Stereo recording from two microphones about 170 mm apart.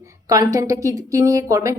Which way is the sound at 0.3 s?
20° right (ahead or behind).